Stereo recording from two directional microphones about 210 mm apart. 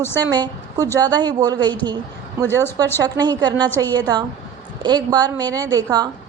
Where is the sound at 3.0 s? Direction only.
20° right (ahead or behind).